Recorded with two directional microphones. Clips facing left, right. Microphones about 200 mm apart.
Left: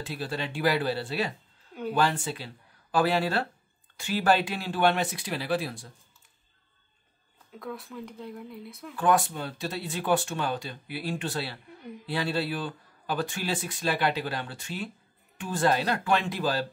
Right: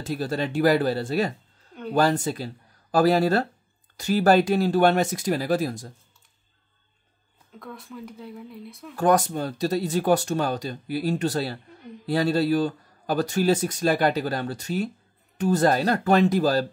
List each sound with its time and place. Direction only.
0.0 s speech: 40° right (ahead or behind)
7.5 s speech: centre (ahead or behind)
8.9 s speech: 40° right (ahead or behind)